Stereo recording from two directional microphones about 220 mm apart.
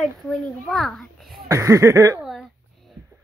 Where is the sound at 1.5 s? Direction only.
15° right (ahead or behind).